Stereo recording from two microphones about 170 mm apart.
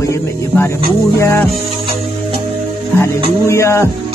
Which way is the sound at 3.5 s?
15° left (ahead or behind).